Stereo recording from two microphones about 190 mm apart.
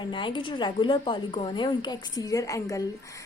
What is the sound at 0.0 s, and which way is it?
A woman's voice, 25° left (ahead or behind).